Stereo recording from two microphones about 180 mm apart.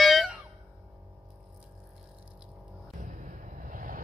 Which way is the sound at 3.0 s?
45° right (ahead or behind).